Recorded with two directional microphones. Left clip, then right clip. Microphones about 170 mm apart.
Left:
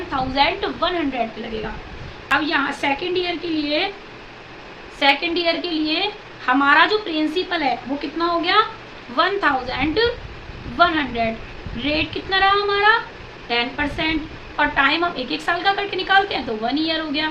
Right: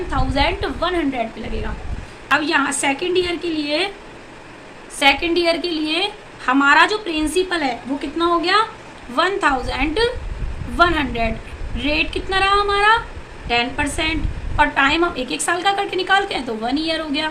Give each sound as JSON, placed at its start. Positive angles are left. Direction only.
{"t": 0.1, "sound": "a woman's voice", "side_deg": -15}
{"t": 2.3, "sound": "a woman's voice", "side_deg": -25}
{"t": 4.9, "sound": "a woman's voice", "side_deg": -30}